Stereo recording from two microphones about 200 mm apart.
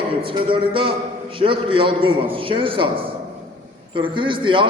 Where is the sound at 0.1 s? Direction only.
25° right (ahead or behind).